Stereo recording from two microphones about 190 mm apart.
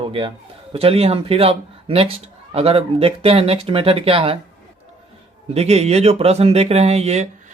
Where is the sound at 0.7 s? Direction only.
30° right (ahead or behind).